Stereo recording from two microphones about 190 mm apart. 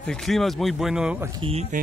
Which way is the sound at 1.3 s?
30° right (ahead or behind).